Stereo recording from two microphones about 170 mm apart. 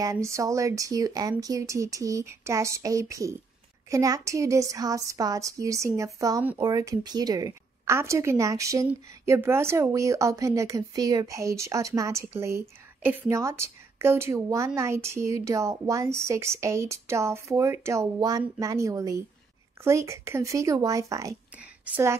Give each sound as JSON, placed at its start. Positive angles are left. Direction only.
{"t": 0.0, "sound": "a woman's voice", "side_deg": -20}